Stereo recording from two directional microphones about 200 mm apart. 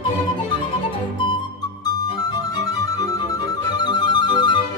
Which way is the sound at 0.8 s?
25° left (ahead or behind).